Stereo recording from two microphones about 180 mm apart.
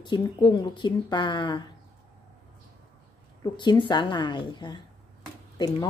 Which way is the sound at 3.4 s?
25° left (ahead or behind).